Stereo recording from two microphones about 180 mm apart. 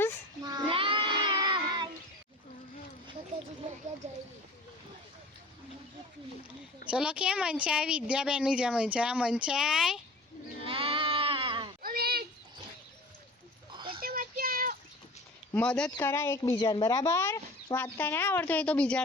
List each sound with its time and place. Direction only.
0.4 s cat: 25° right (ahead or behind)
4.0 s speech: 40° right (ahead or behind)
6.8 s speech: 5° right (ahead or behind)
10.6 s sheep: 30° right (ahead or behind)
11.8 s a sound: 55° right (ahead or behind)
13.7 s a sound: 25° right (ahead or behind)
14.0 s child singing: 55° right (ahead or behind)
15.5 s speech: 5° left (ahead or behind)